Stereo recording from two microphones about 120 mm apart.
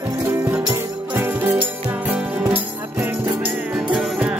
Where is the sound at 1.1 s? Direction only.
15° right (ahead or behind).